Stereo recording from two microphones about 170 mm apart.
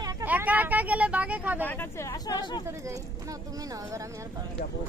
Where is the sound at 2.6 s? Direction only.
20° right (ahead or behind).